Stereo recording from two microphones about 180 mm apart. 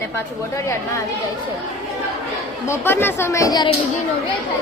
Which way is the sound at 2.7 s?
10° left (ahead or behind).